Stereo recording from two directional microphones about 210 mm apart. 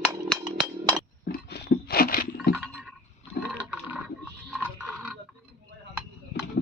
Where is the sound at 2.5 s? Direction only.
10° right (ahead or behind).